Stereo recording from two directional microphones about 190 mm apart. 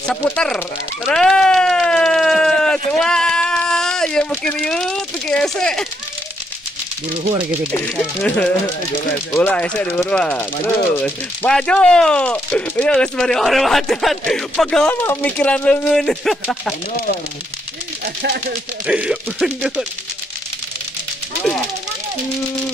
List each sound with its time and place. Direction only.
0.0 s speech: 5° left (ahead or behind)
1.0 s a sound: 5° left (ahead or behind)
3.0 s sheep: 5° left (ahead or behind)
7.9 s speech: centre (ahead or behind)
18.0 s speech: 55° right (ahead or behind)
18.9 s speech: 5° right (ahead or behind)